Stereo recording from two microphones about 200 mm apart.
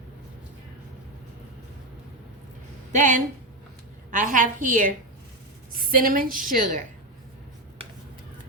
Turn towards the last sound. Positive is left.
turn(degrees=-45)  # may be behind; listen again after turning